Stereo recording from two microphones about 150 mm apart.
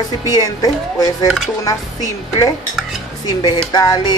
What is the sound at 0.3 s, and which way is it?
Stir, 25° left (ahead or behind).